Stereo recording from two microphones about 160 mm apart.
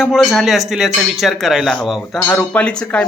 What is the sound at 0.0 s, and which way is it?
Speech, centre (ahead or behind).